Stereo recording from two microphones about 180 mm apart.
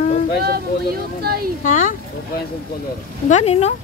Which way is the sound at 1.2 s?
60° right (ahead or behind).